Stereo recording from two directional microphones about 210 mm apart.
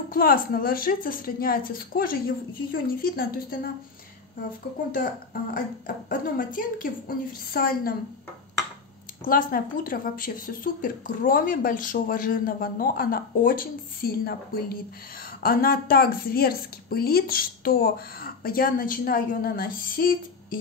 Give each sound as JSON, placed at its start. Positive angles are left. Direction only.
{"t": 0.1, "sound": "a woman's voice", "side_deg": 45}
{"t": 4.9, "sound": "a woman's voice", "side_deg": 40}
{"t": 9.2, "sound": "a woman's voice", "side_deg": 40}